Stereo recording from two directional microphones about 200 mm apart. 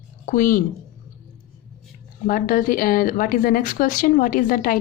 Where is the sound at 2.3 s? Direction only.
45° left (ahead or behind).